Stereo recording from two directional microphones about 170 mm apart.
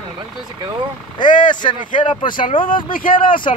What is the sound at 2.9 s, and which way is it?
Speech, 55° left (ahead or behind).